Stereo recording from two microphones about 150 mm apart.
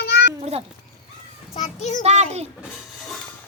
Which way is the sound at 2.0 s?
45° right (ahead or behind).